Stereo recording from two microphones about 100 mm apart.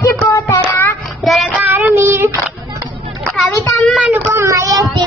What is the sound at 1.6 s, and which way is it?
Child singing, 20° right (ahead or behind).